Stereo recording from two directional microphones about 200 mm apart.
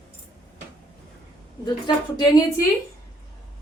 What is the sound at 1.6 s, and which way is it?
Speech, 20° left (ahead or behind).